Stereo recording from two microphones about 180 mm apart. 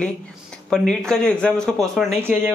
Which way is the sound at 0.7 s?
5° left (ahead or behind).